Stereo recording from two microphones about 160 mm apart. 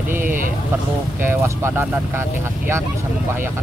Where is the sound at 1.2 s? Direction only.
15° right (ahead or behind).